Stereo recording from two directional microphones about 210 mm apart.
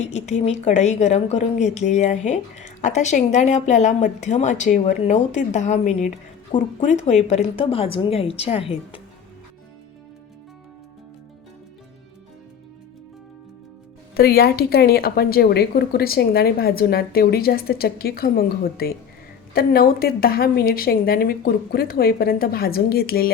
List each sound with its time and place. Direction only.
0.0 s a woman's voice: 35° left (ahead or behind)
14.2 s a woman's voice: 45° left (ahead or behind)